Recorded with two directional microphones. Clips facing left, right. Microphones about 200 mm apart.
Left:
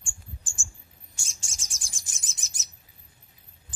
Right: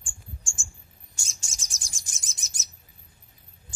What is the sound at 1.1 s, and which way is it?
Bird, 40° right (ahead or behind).